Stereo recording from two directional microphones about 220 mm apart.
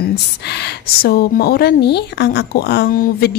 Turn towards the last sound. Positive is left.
turn(degrees=40)  # may be behind; listen again after turning